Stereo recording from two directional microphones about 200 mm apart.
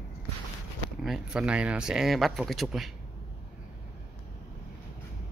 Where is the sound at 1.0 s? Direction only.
5° right (ahead or behind).